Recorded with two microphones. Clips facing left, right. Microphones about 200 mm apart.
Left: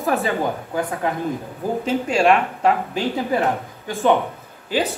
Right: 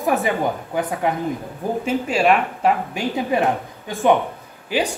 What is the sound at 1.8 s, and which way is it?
Speech, 5° right (ahead or behind).